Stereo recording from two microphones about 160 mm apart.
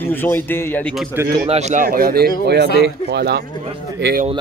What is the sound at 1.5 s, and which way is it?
Speech, 45° right (ahead or behind).